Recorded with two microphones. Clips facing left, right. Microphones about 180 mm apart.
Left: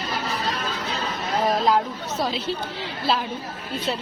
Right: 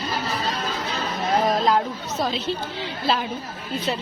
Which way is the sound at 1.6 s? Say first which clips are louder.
Even; 5° left (ahead or behind).